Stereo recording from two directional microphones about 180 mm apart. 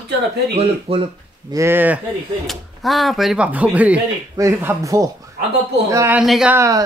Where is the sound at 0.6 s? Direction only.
30° right (ahead or behind).